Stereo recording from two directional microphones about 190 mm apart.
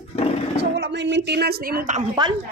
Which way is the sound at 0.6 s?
60° right (ahead or behind).